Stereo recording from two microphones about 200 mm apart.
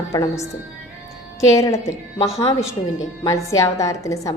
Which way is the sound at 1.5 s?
15° left (ahead or behind).